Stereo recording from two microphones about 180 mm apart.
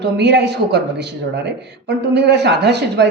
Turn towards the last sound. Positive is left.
turn(degrees=-70)  # may be behind; listen again after turning